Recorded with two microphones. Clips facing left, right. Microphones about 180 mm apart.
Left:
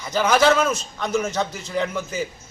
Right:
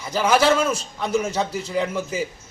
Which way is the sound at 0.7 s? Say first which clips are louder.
Right 1 dB; 35° right (ahead or behind).